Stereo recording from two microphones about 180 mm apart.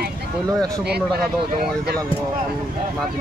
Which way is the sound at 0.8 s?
65° right (ahead or behind).